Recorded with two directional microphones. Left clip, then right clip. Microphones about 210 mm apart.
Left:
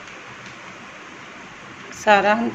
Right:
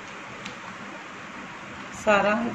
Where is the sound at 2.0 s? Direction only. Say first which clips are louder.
Left 6 dB; 45° left (ahead or behind).